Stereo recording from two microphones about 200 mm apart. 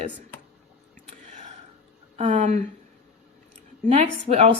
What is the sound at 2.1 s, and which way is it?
Speech, 35° right (ahead or behind).